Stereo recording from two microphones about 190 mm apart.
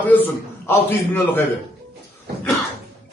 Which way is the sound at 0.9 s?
10° left (ahead or behind).